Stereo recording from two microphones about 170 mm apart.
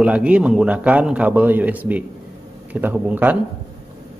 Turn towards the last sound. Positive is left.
turn(degrees=-10)  # may be behind; listen again after turning